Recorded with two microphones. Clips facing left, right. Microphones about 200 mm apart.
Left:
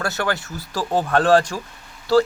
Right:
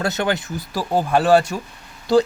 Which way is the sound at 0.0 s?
20° right (ahead or behind).